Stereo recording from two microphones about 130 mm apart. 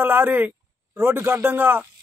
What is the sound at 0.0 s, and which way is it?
A man's voice, 15° right (ahead or behind).